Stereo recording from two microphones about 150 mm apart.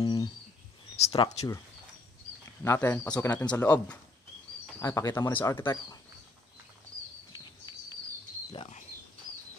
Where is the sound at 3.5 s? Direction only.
10° left (ahead or behind).